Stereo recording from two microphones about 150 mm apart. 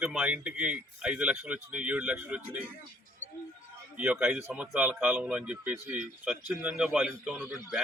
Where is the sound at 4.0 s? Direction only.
5° right (ahead or behind).